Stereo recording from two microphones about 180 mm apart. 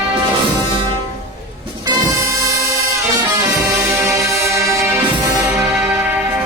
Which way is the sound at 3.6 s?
15° right (ahead or behind).